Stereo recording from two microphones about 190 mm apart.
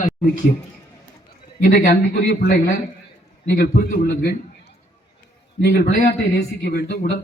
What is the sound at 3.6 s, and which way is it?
A man's voice, 55° left (ahead or behind).